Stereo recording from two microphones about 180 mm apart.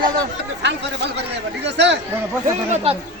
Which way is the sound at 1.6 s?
75° right (ahead or behind).